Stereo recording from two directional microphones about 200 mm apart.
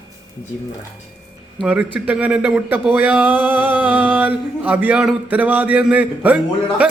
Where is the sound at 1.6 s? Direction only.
5° right (ahead or behind).